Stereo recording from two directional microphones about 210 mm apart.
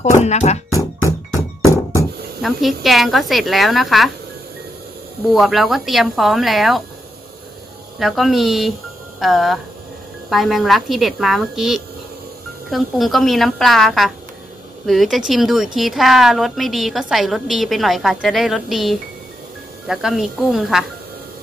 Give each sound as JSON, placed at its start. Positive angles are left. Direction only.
{"t": 0.0, "sound": "speech", "side_deg": 30}
{"t": 2.4, "sound": "a woman's voice", "side_deg": 0}
{"t": 5.3, "sound": "a woman's voice", "side_deg": 0}
{"t": 8.0, "sound": "a woman's voice", "side_deg": 0}